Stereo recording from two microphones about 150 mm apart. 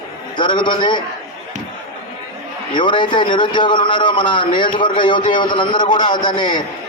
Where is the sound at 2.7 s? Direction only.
30° left (ahead or behind).